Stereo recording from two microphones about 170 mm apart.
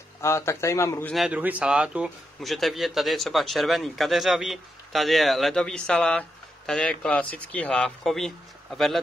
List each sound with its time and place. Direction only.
0.2 s speech: 15° left (ahead or behind)
1.1 s speech: 5° right (ahead or behind)